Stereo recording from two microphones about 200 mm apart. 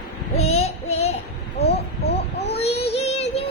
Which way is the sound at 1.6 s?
55° left (ahead or behind).